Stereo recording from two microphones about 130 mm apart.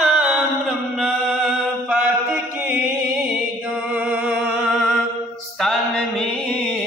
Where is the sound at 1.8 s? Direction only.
15° right (ahead or behind).